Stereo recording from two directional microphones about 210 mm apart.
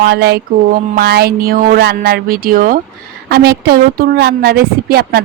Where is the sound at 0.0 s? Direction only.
50° right (ahead or behind).